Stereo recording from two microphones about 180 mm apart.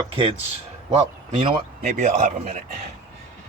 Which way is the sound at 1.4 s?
45° right (ahead or behind).